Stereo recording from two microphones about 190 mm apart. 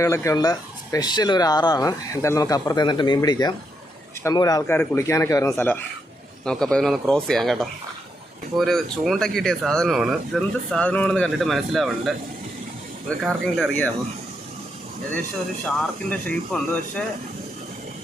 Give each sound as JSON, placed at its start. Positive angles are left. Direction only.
{"t": 0.0, "sound": "speech", "side_deg": 15}
{"t": 15.6, "sound": "speech", "side_deg": 5}